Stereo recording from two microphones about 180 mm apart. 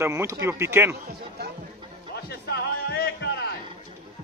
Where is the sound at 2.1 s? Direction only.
60° left (ahead or behind).